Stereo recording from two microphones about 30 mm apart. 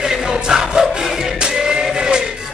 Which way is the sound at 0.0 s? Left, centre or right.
Centre.